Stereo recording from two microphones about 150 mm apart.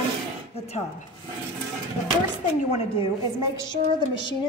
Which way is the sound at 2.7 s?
40° left (ahead or behind).